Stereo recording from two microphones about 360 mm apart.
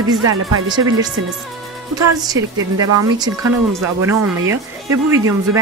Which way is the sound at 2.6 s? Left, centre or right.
Right.